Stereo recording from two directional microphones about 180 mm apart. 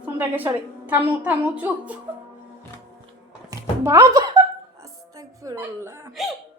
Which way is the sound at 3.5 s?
15° right (ahead or behind).